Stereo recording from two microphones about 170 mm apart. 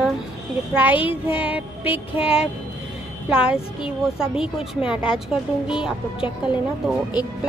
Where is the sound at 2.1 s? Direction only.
35° left (ahead or behind).